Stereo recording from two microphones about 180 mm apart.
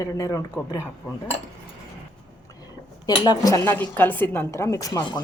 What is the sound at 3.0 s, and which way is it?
Speech, 20° left (ahead or behind).